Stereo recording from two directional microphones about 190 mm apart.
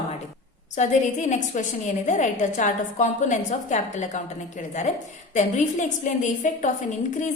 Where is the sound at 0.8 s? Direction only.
40° left (ahead or behind).